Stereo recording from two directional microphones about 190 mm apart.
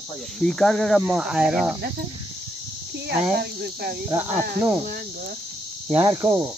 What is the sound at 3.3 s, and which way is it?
Speech, 60° right (ahead or behind).